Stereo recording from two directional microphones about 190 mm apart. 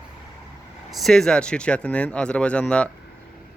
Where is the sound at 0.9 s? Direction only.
Centre (ahead or behind).